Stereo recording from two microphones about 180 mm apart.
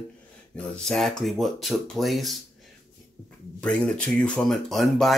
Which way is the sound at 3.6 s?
5° left (ahead or behind).